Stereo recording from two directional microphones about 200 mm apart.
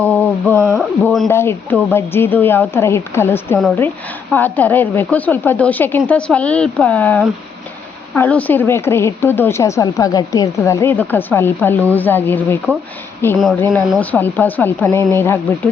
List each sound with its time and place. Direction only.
0.0 s speech: 10° left (ahead or behind)
1.3 s a woman's voice: 10° left (ahead or behind)